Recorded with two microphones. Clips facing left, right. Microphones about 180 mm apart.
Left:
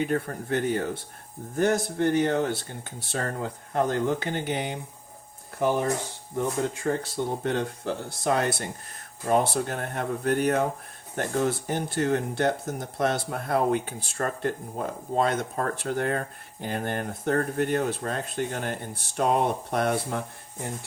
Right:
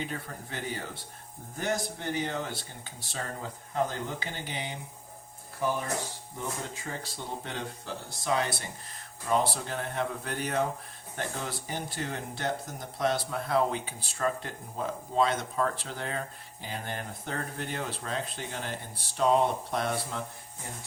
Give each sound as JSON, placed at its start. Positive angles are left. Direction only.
{"t": 0.0, "sound": "speech", "side_deg": 55}